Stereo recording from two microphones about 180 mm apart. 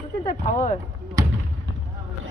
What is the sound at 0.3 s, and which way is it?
Speech, 45° left (ahead or behind).